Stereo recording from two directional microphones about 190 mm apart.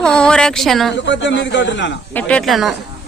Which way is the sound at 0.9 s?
70° left (ahead or behind).